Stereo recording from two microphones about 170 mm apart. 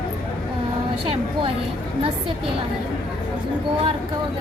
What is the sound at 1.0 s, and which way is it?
Speech, 35° right (ahead or behind).